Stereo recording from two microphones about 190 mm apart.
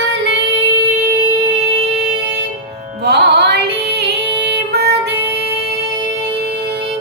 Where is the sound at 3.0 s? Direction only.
60° right (ahead or behind).